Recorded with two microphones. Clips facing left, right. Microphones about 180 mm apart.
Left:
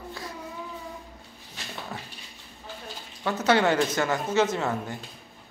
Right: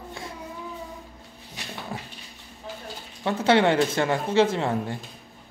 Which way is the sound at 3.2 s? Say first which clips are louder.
Right 2 dB; 30° right (ahead or behind).